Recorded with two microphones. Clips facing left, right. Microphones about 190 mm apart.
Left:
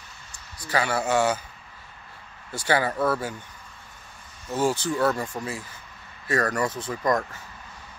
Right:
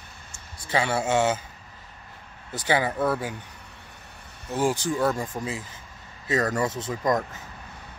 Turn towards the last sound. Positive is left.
turn(degrees=-20)  # may be behind; listen again after turning